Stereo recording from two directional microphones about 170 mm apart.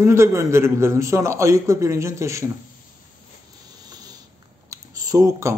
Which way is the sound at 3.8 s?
25° right (ahead or behind).